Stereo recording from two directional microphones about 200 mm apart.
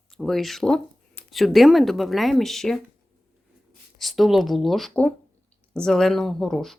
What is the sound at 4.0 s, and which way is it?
Speech, centre (ahead or behind).